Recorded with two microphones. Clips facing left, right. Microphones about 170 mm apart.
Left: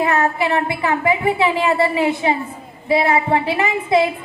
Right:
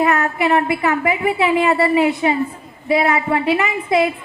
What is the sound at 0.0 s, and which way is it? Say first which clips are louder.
A child's voice: right 1 dB; 30° left (ahead or behind).